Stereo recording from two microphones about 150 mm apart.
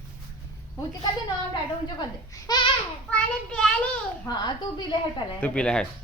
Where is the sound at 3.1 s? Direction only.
5° left (ahead or behind).